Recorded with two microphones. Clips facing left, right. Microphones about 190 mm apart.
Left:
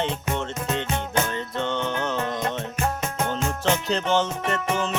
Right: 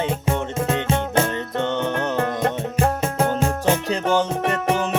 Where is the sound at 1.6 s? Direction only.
15° right (ahead or behind).